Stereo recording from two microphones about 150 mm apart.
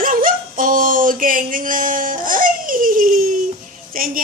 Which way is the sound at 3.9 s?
70° right (ahead or behind).